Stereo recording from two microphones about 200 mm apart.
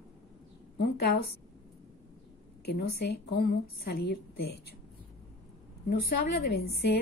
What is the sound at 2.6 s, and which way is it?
A woman's voice, 55° left (ahead or behind).